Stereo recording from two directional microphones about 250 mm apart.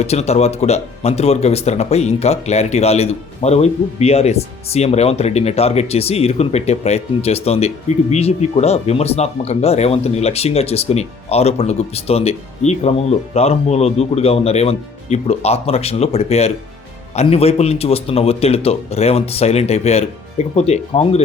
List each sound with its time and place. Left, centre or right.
0.0 s speech: left